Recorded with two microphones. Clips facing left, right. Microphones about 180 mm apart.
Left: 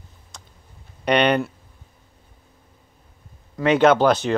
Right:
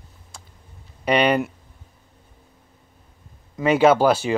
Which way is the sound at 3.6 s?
5° right (ahead or behind).